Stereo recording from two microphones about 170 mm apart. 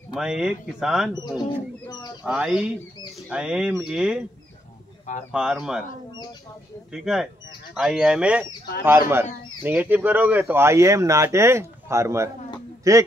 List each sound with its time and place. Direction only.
0.1 s speech: 5° right (ahead or behind)
1.9 s bird: 25° left (ahead or behind)
2.2 s speech: 5° right (ahead or behind)
5.3 s speech: 5° right (ahead or behind)
6.9 s a man's voice: centre (ahead or behind); by 13.0 s 20° right (ahead or behind)